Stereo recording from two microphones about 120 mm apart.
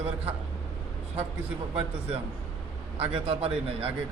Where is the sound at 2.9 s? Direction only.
55° right (ahead or behind).